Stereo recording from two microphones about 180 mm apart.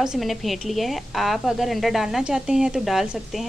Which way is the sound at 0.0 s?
Centre (ahead or behind).